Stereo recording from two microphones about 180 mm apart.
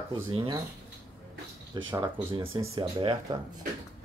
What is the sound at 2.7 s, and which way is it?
Speech, 30° right (ahead or behind).